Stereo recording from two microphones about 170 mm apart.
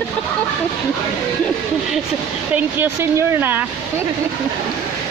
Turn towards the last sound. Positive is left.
turn(degrees=-10)  # may be behind; listen again after turning